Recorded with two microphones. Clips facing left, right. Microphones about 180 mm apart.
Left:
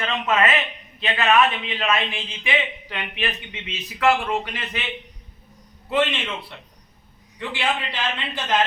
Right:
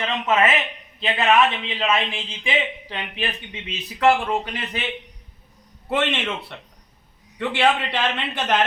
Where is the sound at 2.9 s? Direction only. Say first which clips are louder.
Even; 30° right (ahead or behind).